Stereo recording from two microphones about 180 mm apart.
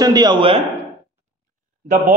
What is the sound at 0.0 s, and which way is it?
Speech, 20° right (ahead or behind).